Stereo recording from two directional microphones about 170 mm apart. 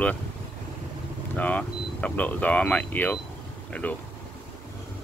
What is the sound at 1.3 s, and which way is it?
Speech, 10° left (ahead or behind).